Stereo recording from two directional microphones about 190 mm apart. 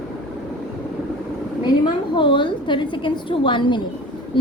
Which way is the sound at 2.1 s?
25° left (ahead or behind).